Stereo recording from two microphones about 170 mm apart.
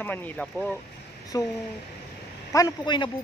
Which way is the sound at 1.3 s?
20° left (ahead or behind).